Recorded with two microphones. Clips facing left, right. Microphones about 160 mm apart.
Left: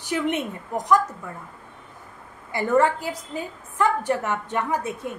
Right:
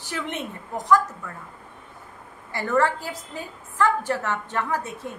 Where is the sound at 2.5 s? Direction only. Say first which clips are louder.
Left 3 dB; 15° left (ahead or behind).